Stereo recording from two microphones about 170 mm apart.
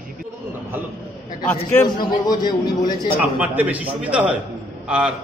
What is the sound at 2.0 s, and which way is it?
A man's voice, 25° left (ahead or behind).